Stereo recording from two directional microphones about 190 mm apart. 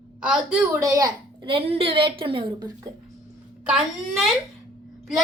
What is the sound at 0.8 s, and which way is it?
A woman's voice, 20° right (ahead or behind).